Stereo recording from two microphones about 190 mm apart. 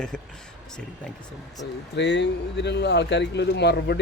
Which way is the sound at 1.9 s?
65° left (ahead or behind).